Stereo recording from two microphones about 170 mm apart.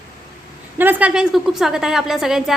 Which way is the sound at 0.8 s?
10° right (ahead or behind).